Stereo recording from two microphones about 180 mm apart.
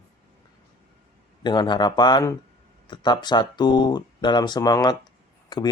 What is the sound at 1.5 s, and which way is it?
Speech, 25° left (ahead or behind).